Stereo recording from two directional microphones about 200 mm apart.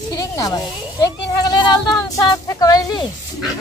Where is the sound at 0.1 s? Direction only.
20° left (ahead or behind).